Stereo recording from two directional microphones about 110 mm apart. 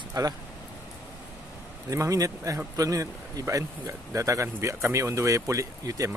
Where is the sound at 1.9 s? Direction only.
30° right (ahead or behind).